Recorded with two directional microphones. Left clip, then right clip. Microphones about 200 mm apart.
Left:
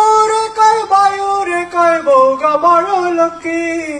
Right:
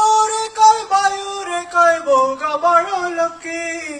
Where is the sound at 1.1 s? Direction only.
55° right (ahead or behind).